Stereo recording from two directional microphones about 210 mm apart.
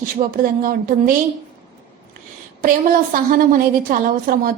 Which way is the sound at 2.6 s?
40° right (ahead or behind).